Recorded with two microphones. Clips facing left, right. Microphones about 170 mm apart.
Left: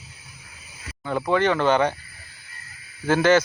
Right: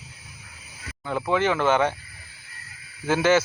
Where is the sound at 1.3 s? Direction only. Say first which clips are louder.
Left 2 dB; 5° right (ahead or behind).